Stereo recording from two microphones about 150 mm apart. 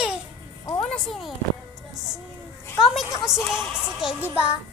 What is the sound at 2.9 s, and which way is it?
Speech, centre (ahead or behind).